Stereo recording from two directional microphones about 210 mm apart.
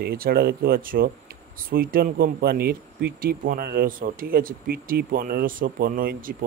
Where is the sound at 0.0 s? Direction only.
45° right (ahead or behind).